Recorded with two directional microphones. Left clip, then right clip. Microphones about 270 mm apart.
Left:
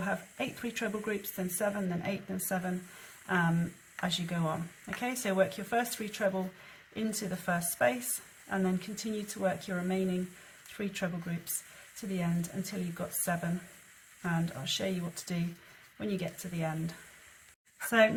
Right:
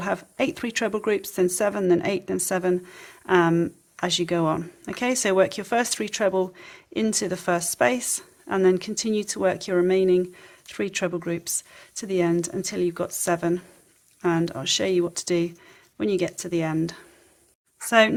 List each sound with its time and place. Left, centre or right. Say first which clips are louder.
0.0 s speech: right 10 dB; right